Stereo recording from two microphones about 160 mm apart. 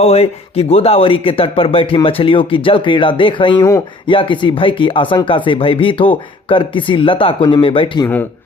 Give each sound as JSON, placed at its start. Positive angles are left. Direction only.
{"t": 0.0, "sound": "speech", "side_deg": 40}
{"t": 8.0, "sound": "speech", "side_deg": 10}